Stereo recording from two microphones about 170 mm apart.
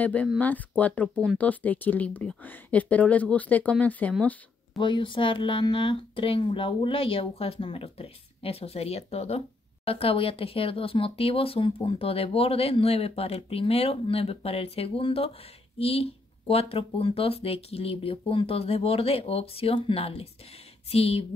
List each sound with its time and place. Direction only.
0.0 s speech: 10° left (ahead or behind)
4.7 s speech: 30° left (ahead or behind)